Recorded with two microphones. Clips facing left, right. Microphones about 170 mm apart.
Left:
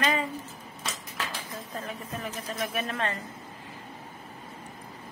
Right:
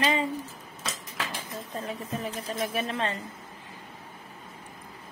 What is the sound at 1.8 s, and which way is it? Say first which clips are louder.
A woman's voice: right 4 dB; 30° right (ahead or behind).